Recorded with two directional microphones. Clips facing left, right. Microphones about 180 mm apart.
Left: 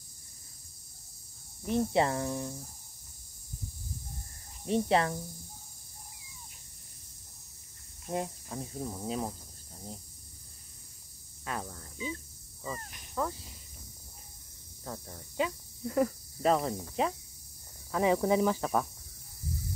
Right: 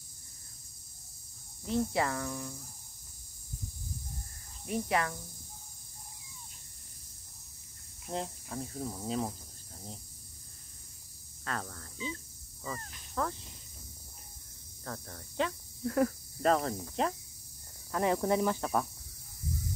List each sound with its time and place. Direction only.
1.7 s speech: 20° left (ahead or behind)
4.6 s speech: 30° left (ahead or behind)
8.1 s cricket: 10° left (ahead or behind)
11.4 s cricket: 10° left (ahead or behind)
12.7 s speech: 20° left (ahead or behind)
14.9 s speech: 10° left (ahead or behind)